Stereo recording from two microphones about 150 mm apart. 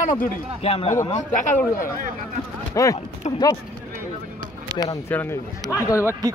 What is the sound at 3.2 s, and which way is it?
Speech, 45° left (ahead or behind).